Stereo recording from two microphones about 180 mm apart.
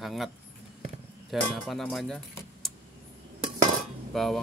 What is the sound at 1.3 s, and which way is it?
Speech, centre (ahead or behind).